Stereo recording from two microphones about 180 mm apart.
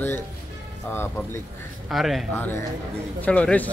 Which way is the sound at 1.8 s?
Centre (ahead or behind).